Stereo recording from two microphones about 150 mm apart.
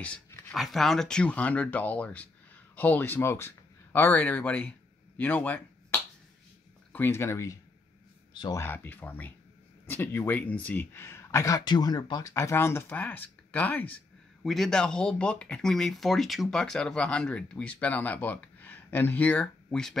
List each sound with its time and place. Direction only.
0.0 s speech: 5° left (ahead or behind)
8.3 s a sound: 30° left (ahead or behind)
8.5 s speech: 15° left (ahead or behind)
14.4 s speech: centre (ahead or behind)